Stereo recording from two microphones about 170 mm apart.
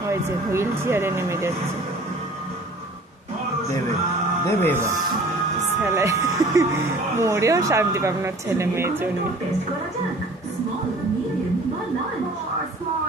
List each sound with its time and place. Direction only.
0.1 s speech: 15° right (ahead or behind)
4.5 s speech: 10° left (ahead or behind)
5.9 s speech: 20° right (ahead or behind)